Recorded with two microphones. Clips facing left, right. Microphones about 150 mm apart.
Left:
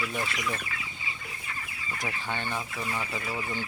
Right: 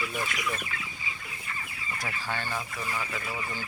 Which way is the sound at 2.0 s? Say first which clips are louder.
Left 1 dB; 20° left (ahead or behind).